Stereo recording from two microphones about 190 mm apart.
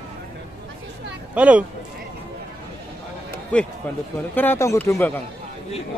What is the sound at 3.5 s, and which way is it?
Speech, 5° left (ahead or behind).